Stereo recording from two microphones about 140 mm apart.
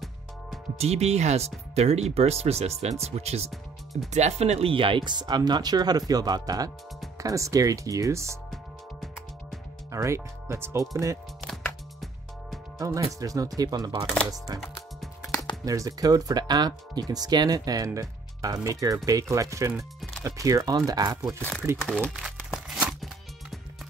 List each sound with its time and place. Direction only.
0.7 s speech: 50° right (ahead or behind); by 8.4 s 20° right (ahead or behind)
9.8 s speech: 20° right (ahead or behind)
12.7 s speech: 25° right (ahead or behind)
14.6 s music: centre (ahead or behind)
15.6 s speech: 25° right (ahead or behind)
21.4 s speech: 10° left (ahead or behind)
22.0 s crumpling: 5° right (ahead or behind)